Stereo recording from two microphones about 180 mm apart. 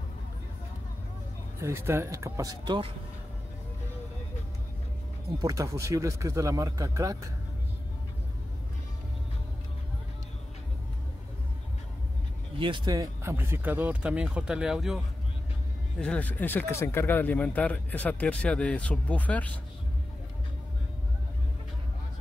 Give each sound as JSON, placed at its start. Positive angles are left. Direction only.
{"t": 1.6, "sound": "speech", "side_deg": -15}
{"t": 5.4, "sound": "speech", "side_deg": -20}
{"t": 12.5, "sound": "speech", "side_deg": -25}
{"t": 16.0, "sound": "speech", "side_deg": 5}